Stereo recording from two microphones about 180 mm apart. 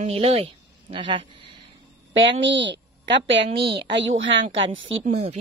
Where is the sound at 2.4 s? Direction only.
85° right.